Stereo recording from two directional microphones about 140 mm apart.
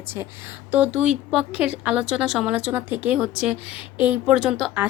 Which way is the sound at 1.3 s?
5° right (ahead or behind).